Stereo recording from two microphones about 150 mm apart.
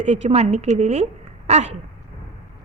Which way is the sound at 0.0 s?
50° right (ahead or behind).